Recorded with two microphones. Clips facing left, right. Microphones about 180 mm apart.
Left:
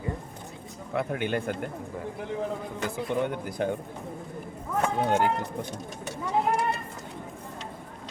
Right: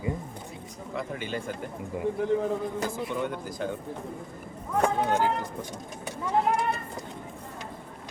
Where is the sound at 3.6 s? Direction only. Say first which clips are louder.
Left 4 dB; 60° left (ahead or behind).